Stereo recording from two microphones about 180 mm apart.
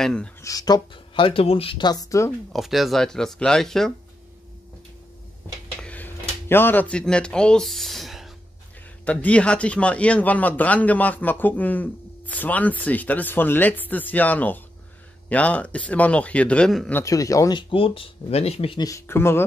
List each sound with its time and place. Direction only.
0.0 s speech: 5° left (ahead or behind)
0.4 s speech: 20° left (ahead or behind)
2.5 s speech: centre (ahead or behind)
5.8 s a sound: 10° left (ahead or behind)
9.0 s a man's voice: 5° left (ahead or behind)
17.0 s speech: 20° left (ahead or behind)
18.9 s a man's voice: 15° left (ahead or behind)